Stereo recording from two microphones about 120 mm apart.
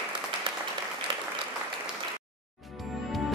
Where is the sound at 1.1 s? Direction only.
45° right (ahead or behind).